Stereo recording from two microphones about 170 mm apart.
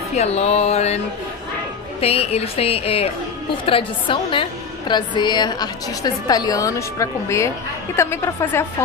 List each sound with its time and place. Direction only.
0.1 s a woman's voice: 40° left (ahead or behind)
2.0 s a woman's voice: 35° left (ahead or behind); by 8.6 s 15° left (ahead or behind)